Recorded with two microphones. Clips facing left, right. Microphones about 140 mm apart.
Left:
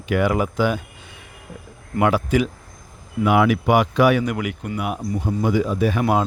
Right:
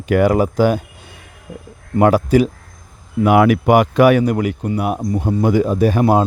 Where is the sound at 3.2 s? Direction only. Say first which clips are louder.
Right 5 dB; 50° right (ahead or behind).